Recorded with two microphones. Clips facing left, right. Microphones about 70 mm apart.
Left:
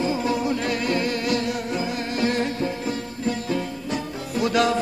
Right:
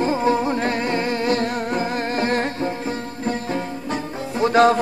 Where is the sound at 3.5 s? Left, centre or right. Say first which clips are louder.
Right 1 dB; right.